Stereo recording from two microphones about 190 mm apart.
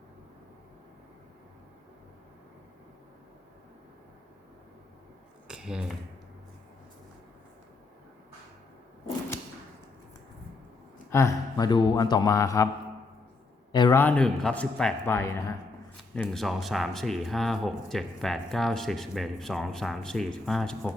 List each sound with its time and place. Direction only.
5.5 s a sound: 5° right (ahead or behind)
11.1 s speech: 15° left (ahead or behind)
13.9 s speech: 10° left (ahead or behind)
16.2 s speech: centre (ahead or behind)